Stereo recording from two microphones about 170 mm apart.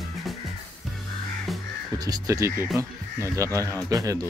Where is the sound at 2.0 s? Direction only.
20° right (ahead or behind).